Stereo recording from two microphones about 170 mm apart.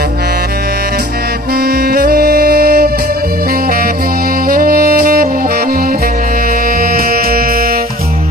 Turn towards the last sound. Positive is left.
turn(degrees=-60)  # may be behind; listen again after turning